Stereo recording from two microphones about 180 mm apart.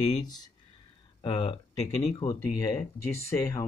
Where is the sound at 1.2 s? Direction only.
25° left (ahead or behind).